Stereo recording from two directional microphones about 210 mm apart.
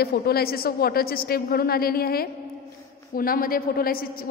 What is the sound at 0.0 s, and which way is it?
A woman's voice, 50° left (ahead or behind).